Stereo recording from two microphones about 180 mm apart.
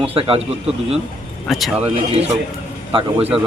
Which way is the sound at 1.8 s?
35° right (ahead or behind).